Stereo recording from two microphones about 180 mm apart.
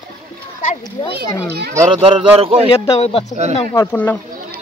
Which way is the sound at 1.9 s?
30° right (ahead or behind).